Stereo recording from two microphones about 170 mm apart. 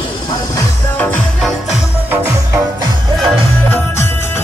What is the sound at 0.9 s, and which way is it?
Music, 10° left (ahead or behind).